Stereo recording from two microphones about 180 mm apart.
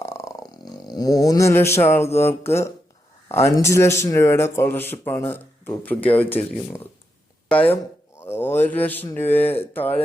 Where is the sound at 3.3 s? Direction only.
15° left (ahead or behind).